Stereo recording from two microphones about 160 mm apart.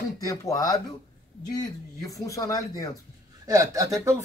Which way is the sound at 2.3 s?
20° left (ahead or behind).